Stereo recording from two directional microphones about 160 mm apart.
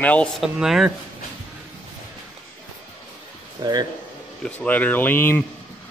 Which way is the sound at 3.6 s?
25° right (ahead or behind).